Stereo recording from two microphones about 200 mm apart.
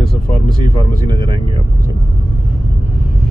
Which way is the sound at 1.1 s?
20° right (ahead or behind).